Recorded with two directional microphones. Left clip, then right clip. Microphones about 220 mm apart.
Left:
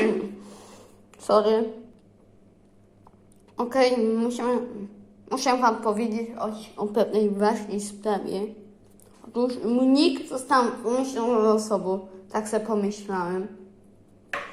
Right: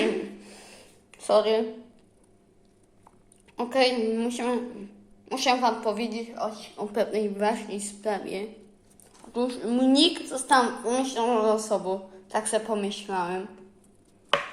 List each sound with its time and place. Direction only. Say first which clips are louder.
1.1 s a sound: left 1 dB; 10° left (ahead or behind)
3.6 s a woman's voice: left 2 dB; 15° right (ahead or behind)
6.3 s speech: left 1 dB; 10° left (ahead or behind)
7.1 s a woman's voice: left 3 dB; 10° right (ahead or behind)
8.2 s a woman's voice: left 4 dB; 10° left (ahead or behind)